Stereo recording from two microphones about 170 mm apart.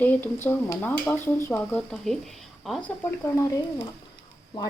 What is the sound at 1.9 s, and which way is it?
Speech, centre (ahead or behind).